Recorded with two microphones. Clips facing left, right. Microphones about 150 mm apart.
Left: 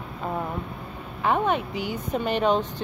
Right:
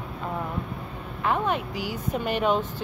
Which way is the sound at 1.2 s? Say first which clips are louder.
Left 2 dB; centre (ahead or behind).